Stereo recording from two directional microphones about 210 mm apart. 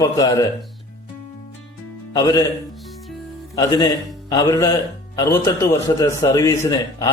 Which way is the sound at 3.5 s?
20° left (ahead or behind).